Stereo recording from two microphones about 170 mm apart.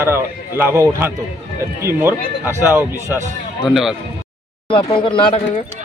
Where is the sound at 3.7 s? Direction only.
Centre (ahead or behind).